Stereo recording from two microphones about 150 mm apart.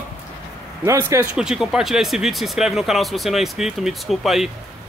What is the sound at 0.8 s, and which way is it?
Speech, 20° right (ahead or behind).